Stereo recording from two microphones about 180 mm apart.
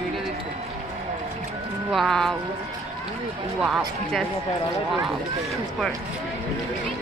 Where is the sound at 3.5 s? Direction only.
Centre (ahead or behind).